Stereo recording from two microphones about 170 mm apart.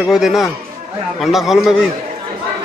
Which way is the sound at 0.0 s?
Centre (ahead or behind).